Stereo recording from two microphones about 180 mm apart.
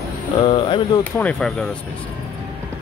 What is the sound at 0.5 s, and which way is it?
Speech, 30° left (ahead or behind).